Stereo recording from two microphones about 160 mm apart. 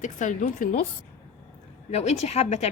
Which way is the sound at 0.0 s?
50° left (ahead or behind).